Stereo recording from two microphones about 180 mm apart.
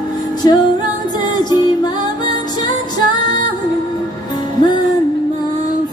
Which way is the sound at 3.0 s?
25° left (ahead or behind).